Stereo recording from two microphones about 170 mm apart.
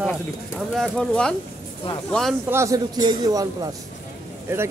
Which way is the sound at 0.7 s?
5° left (ahead or behind).